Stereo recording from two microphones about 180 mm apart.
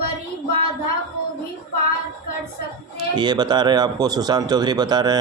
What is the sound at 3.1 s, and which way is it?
Speech, 25° right (ahead or behind).